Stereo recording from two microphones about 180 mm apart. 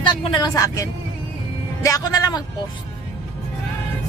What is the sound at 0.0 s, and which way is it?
Speech, 25° left (ahead or behind).